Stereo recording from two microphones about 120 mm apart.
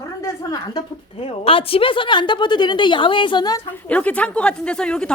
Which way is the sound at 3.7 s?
10° left (ahead or behind).